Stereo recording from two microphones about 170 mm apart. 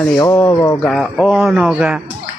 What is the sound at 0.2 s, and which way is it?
Speech, 15° left (ahead or behind).